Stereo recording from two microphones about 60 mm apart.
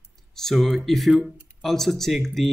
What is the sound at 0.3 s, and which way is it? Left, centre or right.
Speech, centre.